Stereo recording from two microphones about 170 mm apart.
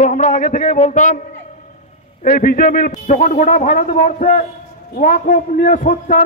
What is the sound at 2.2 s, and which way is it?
Speech, 55° left (ahead or behind).